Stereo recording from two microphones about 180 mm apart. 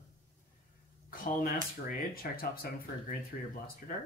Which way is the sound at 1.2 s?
50° left (ahead or behind).